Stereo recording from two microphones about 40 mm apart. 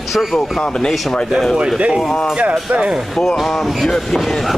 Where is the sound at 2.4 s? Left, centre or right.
Right.